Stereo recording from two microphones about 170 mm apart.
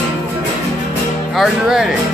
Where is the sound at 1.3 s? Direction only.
Centre (ahead or behind).